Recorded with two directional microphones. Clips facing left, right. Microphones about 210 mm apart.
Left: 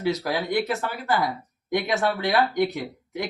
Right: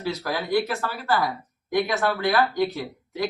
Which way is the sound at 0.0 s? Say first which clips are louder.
Left 3 dB; 20° left (ahead or behind).